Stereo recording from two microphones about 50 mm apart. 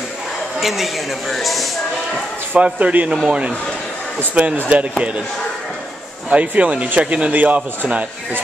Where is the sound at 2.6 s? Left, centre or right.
Right.